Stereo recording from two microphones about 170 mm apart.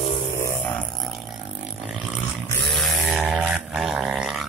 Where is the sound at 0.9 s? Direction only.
Centre (ahead or behind).